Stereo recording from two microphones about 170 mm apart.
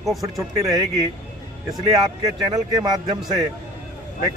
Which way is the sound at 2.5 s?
20° right (ahead or behind).